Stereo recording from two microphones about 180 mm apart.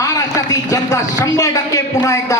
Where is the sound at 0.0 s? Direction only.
20° left (ahead or behind).